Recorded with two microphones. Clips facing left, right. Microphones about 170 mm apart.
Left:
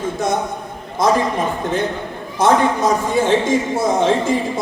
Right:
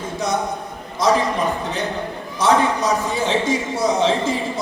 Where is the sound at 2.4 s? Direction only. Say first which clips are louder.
Left 3 dB; 50° left (ahead or behind).